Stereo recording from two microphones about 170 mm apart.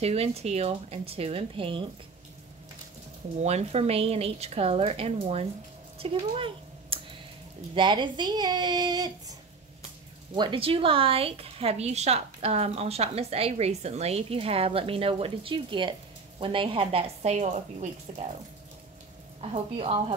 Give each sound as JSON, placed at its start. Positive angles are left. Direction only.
{"t": 0.0, "sound": "a woman's voice", "side_deg": -35}
{"t": 3.3, "sound": "a woman's voice", "side_deg": -40}
{"t": 5.9, "sound": "a sound", "side_deg": -35}
{"t": 7.7, "sound": "speech", "side_deg": -25}
{"t": 10.3, "sound": "a woman's voice", "side_deg": -30}
{"t": 19.5, "sound": "a woman's voice", "side_deg": -35}